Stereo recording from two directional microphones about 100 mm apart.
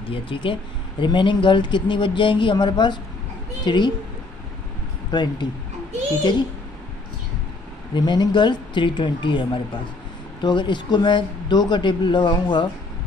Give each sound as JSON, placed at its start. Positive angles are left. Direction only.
{"t": 0.1, "sound": "speech", "side_deg": 55}
{"t": 5.1, "sound": "speech", "side_deg": 45}
{"t": 7.9, "sound": "speech", "side_deg": 45}